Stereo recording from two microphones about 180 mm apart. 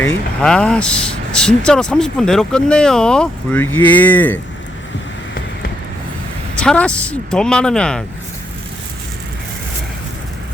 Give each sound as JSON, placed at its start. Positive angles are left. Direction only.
{"t": 0.0, "sound": "speech", "side_deg": 5}
{"t": 6.6, "sound": "speech", "side_deg": 5}